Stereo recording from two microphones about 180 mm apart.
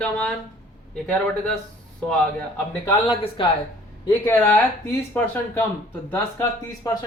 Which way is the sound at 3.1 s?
30° left (ahead or behind).